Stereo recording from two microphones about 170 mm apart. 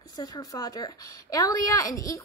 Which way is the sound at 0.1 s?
20° left (ahead or behind).